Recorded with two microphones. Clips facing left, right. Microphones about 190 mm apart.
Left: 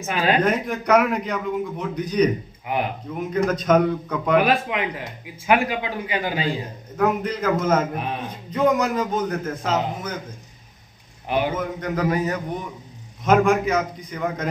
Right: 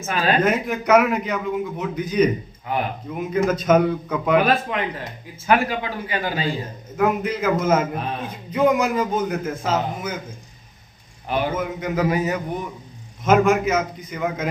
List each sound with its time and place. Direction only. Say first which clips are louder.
0.0 s speech: even; 15° left (ahead or behind)
0.4 s a man's voice: right 1 dB; 5° right (ahead or behind)
2.6 s speech: even; 15° left (ahead or behind)
3.1 s a man's voice: right 2 dB; 5° right (ahead or behind)
4.4 s speech: even; 10° left (ahead or behind)
7.0 s a man's voice: right 1 dB; 5° right (ahead or behind)
11.2 s a man's voice: left 1 dB; 15° left (ahead or behind)
11.5 s a man's voice: right 2 dB; 5° right (ahead or behind)